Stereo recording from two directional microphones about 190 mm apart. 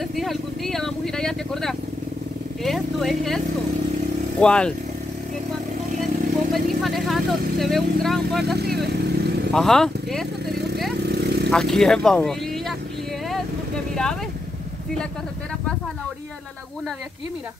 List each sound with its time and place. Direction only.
0.1 s vehicle: centre (ahead or behind)
2.6 s speech: centre (ahead or behind)
4.4 s speech: 5° left (ahead or behind)
6.5 s speech: centre (ahead or behind)
8.5 s vehicle: 60° right (ahead or behind)
9.5 s speech: centre (ahead or behind)
11.1 s vehicle: 60° right (ahead or behind)
11.5 s speech: 5° left (ahead or behind)